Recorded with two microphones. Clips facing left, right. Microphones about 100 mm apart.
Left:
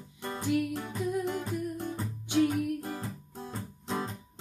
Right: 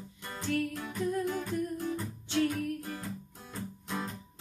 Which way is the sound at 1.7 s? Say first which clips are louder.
Right 1 dB; 20° left (ahead or behind).